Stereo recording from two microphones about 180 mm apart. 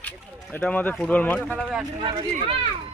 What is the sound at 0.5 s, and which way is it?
Speech, 10° left (ahead or behind).